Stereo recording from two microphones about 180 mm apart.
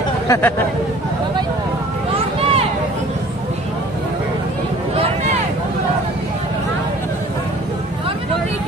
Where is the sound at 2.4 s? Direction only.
35° right (ahead or behind).